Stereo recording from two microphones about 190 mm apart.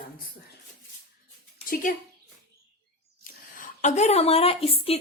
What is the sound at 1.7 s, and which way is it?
Speech, 50° left (ahead or behind).